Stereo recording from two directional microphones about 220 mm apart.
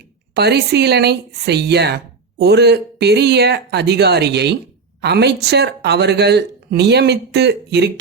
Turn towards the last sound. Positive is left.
turn(degrees=-50)  # may be behind; listen again after turning